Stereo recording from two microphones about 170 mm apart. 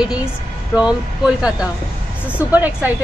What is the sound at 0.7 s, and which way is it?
Speech, 5° right (ahead or behind).